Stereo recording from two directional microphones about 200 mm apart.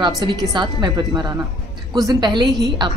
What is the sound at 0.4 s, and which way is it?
Speech, 20° right (ahead or behind).